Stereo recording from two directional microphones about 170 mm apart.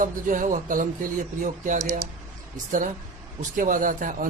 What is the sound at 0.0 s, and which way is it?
A man's voice, 50° right (ahead or behind).